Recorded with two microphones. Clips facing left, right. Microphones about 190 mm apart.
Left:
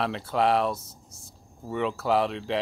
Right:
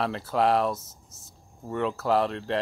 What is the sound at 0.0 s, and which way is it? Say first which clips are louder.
Speech: even; centre (ahead or behind).